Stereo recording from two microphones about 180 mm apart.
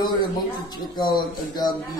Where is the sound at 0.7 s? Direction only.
25° left (ahead or behind).